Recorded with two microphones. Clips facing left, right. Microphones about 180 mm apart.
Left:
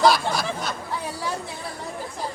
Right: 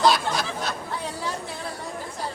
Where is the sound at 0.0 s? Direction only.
Centre (ahead or behind).